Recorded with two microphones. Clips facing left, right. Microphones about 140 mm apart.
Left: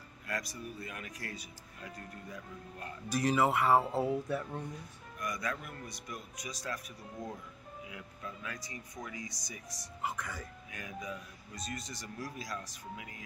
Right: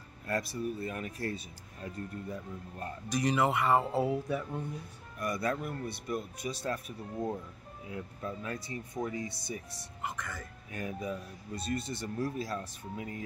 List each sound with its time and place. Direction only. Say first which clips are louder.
0.3 s a man's voice: right 7 dB; 30° right (ahead or behind)
3.1 s speech: even; 5° left (ahead or behind)
5.2 s speech: right 6 dB; 35° right (ahead or behind)
10.0 s speech: even; 10° left (ahead or behind)
10.7 s speech: right 7 dB; 35° right (ahead or behind)